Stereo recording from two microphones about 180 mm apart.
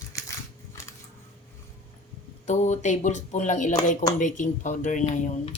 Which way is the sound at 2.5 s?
40° left (ahead or behind).